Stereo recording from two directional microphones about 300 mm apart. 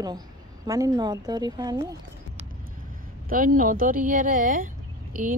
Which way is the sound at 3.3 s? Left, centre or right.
Right.